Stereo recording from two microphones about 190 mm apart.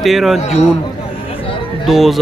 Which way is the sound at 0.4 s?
35° left (ahead or behind).